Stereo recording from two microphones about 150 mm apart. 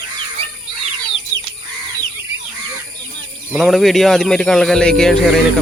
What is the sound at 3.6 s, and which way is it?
Speech, centre (ahead or behind).